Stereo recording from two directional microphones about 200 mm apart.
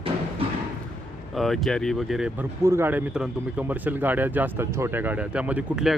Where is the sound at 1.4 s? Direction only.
Centre (ahead or behind).